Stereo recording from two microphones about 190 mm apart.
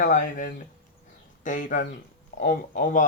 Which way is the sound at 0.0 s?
45° left (ahead or behind).